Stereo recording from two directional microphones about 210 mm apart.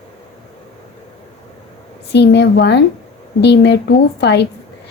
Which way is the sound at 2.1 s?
55° left (ahead or behind).